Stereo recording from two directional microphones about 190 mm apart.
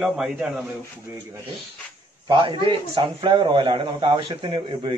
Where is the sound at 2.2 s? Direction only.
25° right (ahead or behind).